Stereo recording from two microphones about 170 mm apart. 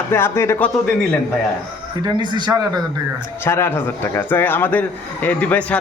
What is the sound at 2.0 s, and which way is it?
Speech, 25° right (ahead or behind).